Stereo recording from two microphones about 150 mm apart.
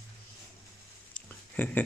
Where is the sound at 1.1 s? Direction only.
10° left (ahead or behind).